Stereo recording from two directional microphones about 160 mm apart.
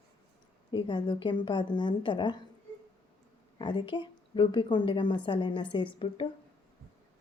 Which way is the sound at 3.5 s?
30° left (ahead or behind).